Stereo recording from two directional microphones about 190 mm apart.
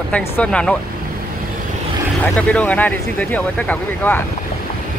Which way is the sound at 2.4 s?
5° left (ahead or behind).